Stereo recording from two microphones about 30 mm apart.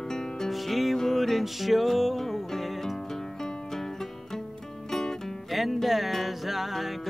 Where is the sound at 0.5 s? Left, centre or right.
Centre.